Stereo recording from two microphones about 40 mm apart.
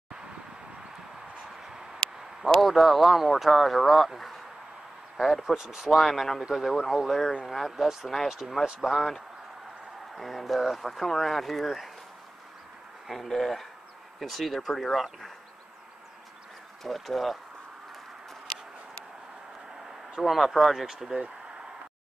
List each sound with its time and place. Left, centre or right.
1.6 s a sound: centre
2.4 s speech: centre
13.1 s speech: centre
16.8 s speech: centre
20.2 s speech: centre